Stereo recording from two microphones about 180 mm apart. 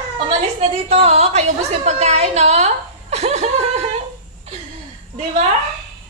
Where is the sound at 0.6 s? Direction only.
35° right (ahead or behind).